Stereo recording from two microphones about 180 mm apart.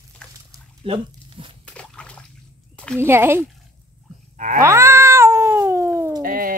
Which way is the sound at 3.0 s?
15° right (ahead or behind).